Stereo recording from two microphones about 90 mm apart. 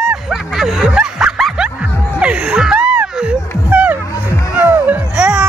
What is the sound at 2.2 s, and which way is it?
Music, 10° right (ahead or behind).